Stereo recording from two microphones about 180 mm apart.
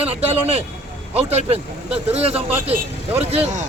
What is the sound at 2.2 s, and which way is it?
Speech, 5° right (ahead or behind).